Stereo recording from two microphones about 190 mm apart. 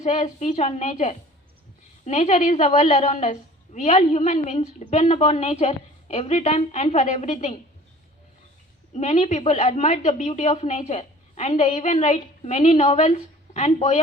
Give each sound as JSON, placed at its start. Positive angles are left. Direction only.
{"t": 0.0, "sound": "a woman's voice", "side_deg": 35}
{"t": 8.9, "sound": "a woman's voice", "side_deg": 35}